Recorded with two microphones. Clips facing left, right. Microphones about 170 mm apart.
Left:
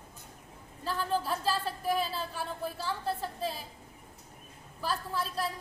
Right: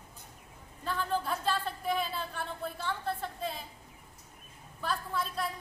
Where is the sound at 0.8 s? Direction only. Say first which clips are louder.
Left 1 dB; 5° left (ahead or behind).